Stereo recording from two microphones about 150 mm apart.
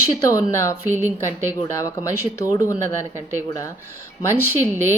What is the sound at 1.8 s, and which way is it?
Speech, 20° left (ahead or behind).